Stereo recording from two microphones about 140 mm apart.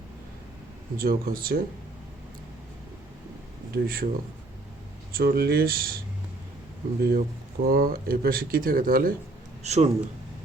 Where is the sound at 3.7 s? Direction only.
90° right.